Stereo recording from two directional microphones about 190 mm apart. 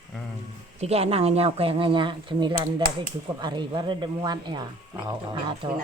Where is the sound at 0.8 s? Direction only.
35° right (ahead or behind).